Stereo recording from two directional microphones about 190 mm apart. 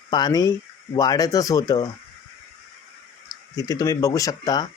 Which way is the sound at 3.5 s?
20° left (ahead or behind).